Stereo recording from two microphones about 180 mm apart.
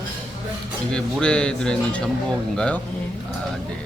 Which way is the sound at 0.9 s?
5° left (ahead or behind).